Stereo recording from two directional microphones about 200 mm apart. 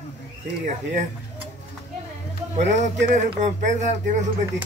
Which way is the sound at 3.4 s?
35° right (ahead or behind).